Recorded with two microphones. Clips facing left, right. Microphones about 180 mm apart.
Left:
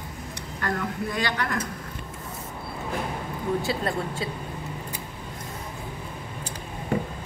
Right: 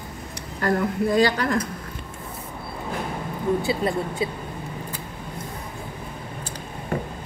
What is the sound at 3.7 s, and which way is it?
Speech, 10° right (ahead or behind).